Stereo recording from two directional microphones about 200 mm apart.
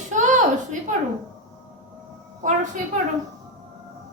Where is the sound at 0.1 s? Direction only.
40° right (ahead or behind).